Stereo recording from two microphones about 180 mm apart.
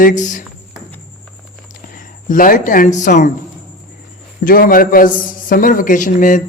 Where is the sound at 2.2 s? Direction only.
50° left (ahead or behind).